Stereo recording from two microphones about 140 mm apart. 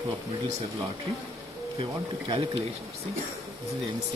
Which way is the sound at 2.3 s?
40° right (ahead or behind).